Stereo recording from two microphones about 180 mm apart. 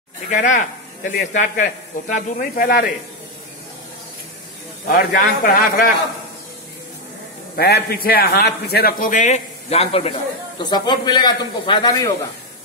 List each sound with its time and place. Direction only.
0.3 s speech: 45° left (ahead or behind)
4.8 s speech: 55° left (ahead or behind)
7.5 s a man's voice: 60° left (ahead or behind); by 10.1 s 35° left (ahead or behind)
10.6 s a man's voice: 25° left (ahead or behind)